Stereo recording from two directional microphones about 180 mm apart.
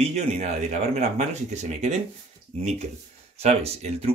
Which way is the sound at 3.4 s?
35° right (ahead or behind).